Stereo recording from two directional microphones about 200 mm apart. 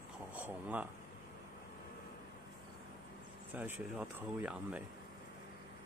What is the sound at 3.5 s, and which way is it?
Speech, 10° right (ahead or behind).